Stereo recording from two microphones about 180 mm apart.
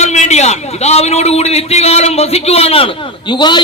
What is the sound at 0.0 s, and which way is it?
A man's voice, 40° left (ahead or behind).